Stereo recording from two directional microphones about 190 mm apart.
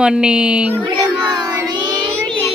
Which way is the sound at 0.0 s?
5° right (ahead or behind).